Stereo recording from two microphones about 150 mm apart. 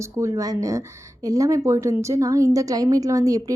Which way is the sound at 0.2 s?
20° right (ahead or behind).